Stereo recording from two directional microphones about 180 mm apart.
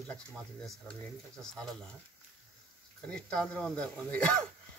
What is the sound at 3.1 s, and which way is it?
Speech, 5° left (ahead or behind).